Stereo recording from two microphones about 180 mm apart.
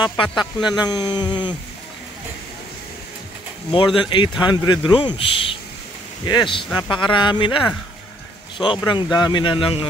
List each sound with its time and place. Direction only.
0.0 s a man's voice: 25° left (ahead or behind)
3.7 s a man's voice: 25° left (ahead or behind)
8.6 s a man's voice: 25° left (ahead or behind)